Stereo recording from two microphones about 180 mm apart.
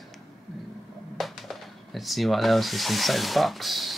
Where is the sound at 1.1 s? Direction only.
Centre (ahead or behind).